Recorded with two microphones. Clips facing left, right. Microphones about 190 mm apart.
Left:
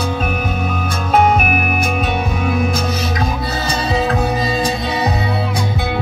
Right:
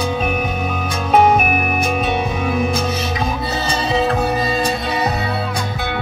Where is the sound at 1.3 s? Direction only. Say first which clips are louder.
Even; 5° left (ahead or behind).